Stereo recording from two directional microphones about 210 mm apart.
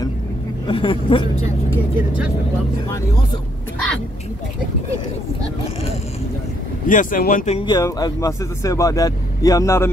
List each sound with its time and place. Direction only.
0.7 s speech: 25° left (ahead or behind)
6.9 s speech: 40° left (ahead or behind)
7.5 s speech: 20° left (ahead or behind)